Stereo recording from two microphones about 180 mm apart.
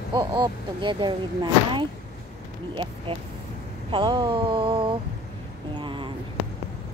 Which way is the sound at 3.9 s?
25° right (ahead or behind).